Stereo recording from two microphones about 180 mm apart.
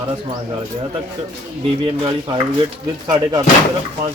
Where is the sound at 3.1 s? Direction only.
20° right (ahead or behind).